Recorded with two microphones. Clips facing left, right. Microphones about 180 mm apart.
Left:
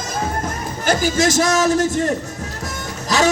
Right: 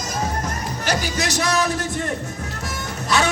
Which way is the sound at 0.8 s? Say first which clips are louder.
Left 7 dB; 45° left (ahead or behind).